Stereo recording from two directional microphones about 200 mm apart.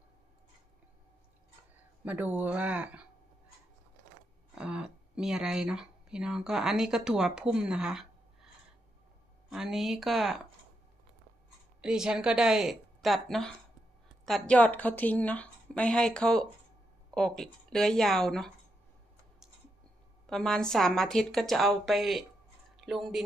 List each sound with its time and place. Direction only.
2.0 s speech: 10° right (ahead or behind)
4.5 s speech: 5° right (ahead or behind)
9.5 s a woman's voice: centre (ahead or behind)
11.8 s a woman's voice: 5° right (ahead or behind)
20.2 s a woman's voice: 5° left (ahead or behind)